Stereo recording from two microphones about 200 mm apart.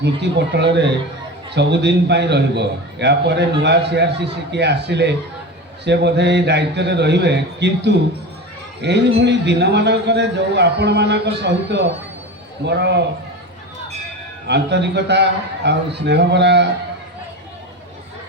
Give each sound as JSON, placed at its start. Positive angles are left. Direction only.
{"t": 0.0, "sound": "a man's voice", "side_deg": -60}
{"t": 14.4, "sound": "a man's voice", "side_deg": -60}